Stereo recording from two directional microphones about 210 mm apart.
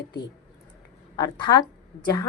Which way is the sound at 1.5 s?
20° left (ahead or behind).